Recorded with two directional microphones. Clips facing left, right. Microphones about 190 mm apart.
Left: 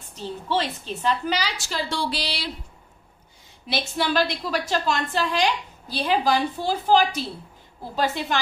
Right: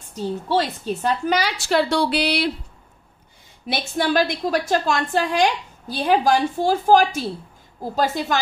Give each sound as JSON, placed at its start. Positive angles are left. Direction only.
{"t": 0.1, "sound": "a woman's voice", "side_deg": -40}
{"t": 3.6, "sound": "a woman's voice", "side_deg": -50}